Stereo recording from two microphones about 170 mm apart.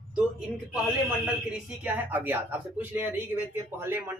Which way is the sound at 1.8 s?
10° right (ahead or behind).